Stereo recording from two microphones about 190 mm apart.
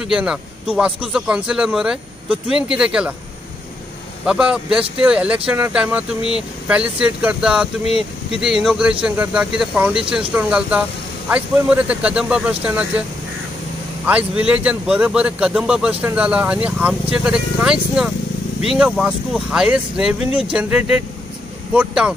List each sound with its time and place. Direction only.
0.0 s speech: 5° right (ahead or behind)
4.3 s a man's voice: 5° right (ahead or behind)
7.8 s speech: 30° left (ahead or behind)
8.4 s speech: 5° right (ahead or behind)
14.0 s a man's voice: 5° right (ahead or behind)